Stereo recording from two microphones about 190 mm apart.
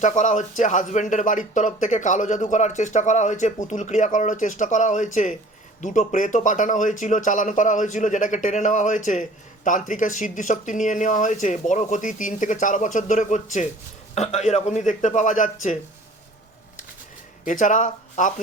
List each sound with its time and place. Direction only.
0.0 s speech: 40° left (ahead or behind)
17.4 s speech: 45° left (ahead or behind)